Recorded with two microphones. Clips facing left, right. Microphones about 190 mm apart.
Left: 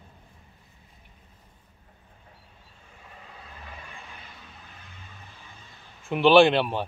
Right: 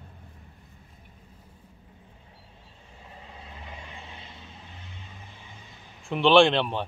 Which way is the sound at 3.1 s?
20° right (ahead or behind).